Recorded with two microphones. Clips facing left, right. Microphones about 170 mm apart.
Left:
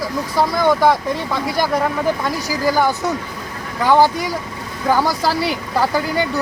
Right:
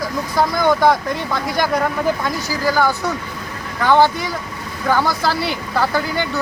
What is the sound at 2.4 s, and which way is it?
Speech, 15° left (ahead or behind).